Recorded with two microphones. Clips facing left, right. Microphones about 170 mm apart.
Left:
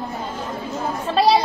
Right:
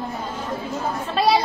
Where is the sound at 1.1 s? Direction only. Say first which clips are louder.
Left 3 dB; 30° left (ahead or behind).